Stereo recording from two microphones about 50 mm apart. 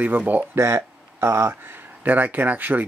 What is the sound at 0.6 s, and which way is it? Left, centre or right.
Speech, right.